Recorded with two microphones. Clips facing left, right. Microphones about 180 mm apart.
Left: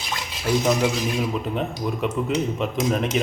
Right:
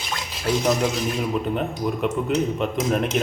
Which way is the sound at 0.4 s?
5° left (ahead or behind).